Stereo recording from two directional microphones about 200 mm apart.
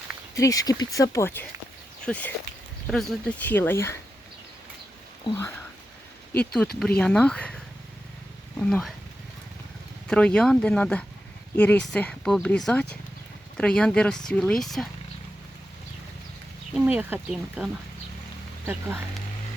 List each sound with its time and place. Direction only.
0.3 s speech: 15° left (ahead or behind)
6.3 s speech: 5° left (ahead or behind)
10.1 s speech: 5° left (ahead or behind)
16.7 s speech: 5° right (ahead or behind)